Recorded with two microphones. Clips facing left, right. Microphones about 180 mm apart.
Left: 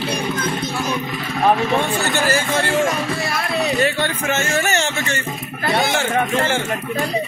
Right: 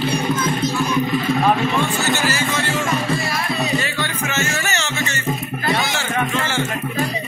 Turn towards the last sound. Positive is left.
turn(degrees=45)  # may be behind; listen again after turning